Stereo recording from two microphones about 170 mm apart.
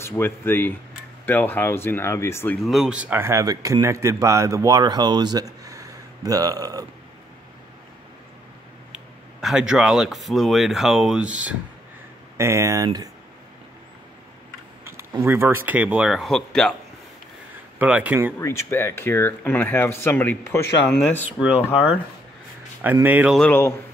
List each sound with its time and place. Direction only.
0.1 s speech: 10° left (ahead or behind)
2.6 s speech: centre (ahead or behind); by 6.9 s 20° right (ahead or behind)
8.9 s speech: 5° right (ahead or behind); by 13.1 s 20° right (ahead or behind)
14.9 s speech: 15° right (ahead or behind); by 16.7 s centre (ahead or behind)
17.7 s speech: 5° right (ahead or behind)
18.4 s speech: 15° left (ahead or behind)
23.0 s speech: 10° right (ahead or behind)